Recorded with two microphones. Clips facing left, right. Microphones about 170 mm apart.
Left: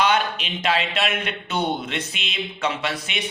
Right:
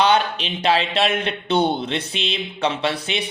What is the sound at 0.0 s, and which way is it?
A man's voice, 30° right (ahead or behind).